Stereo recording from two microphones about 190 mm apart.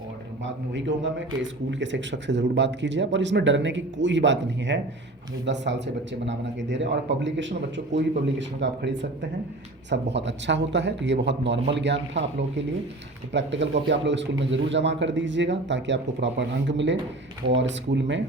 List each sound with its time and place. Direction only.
0.7 s a man's voice: 75° right (ahead or behind)